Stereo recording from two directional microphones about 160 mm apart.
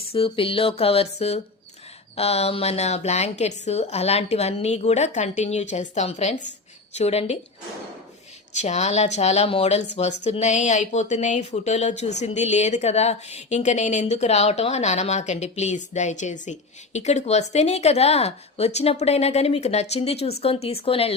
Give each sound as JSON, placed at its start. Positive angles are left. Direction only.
{"t": 0.1, "sound": "a woman's voice", "side_deg": 35}
{"t": 8.6, "sound": "a woman's voice", "side_deg": 45}